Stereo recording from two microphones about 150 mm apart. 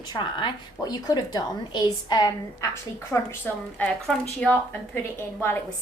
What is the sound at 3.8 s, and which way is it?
A woman's voice, 5° left (ahead or behind).